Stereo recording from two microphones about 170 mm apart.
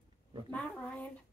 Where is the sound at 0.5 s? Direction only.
5° left (ahead or behind).